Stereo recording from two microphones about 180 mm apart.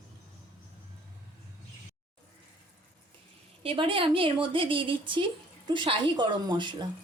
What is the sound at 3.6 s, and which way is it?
A woman's voice, 30° right (ahead or behind).